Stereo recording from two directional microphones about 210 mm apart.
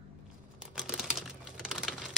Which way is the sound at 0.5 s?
5° right (ahead or behind).